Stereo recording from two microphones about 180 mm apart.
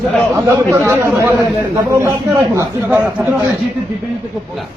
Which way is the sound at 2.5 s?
10° right (ahead or behind).